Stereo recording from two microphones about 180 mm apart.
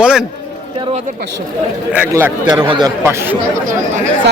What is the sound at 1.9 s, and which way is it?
Speech, 10° right (ahead or behind).